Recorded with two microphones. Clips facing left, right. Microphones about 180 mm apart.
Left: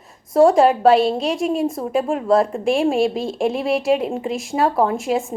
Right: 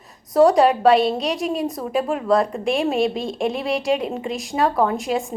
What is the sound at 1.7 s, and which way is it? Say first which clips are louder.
A woman's voice: left 2 dB; 25° left (ahead or behind).